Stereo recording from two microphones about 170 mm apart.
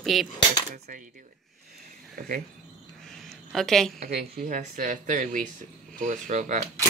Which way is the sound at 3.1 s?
Centre (ahead or behind).